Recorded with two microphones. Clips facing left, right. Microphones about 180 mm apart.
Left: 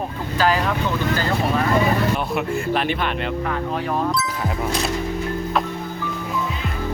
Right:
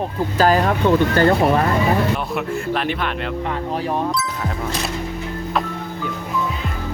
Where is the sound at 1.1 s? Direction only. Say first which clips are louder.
Right 7 dB; 60° right (ahead or behind).